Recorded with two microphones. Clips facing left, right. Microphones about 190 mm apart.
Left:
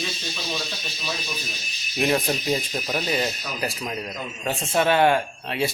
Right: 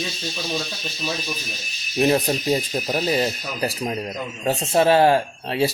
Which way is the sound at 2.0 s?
35° right (ahead or behind).